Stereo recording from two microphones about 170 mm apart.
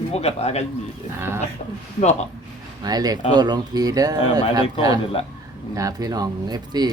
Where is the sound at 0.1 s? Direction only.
40° left (ahead or behind).